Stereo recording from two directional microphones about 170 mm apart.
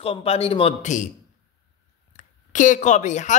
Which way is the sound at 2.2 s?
45° left (ahead or behind).